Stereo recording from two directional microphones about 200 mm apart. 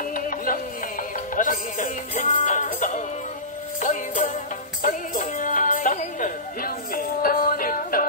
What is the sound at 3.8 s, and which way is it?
Music, 40° left (ahead or behind).